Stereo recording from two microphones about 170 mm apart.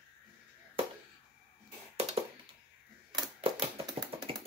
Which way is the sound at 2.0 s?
35° right (ahead or behind).